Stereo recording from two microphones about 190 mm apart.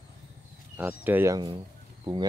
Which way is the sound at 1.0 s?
10° right (ahead or behind).